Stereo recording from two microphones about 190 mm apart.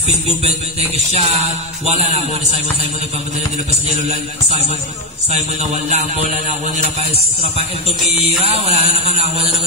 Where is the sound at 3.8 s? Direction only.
35° right (ahead or behind).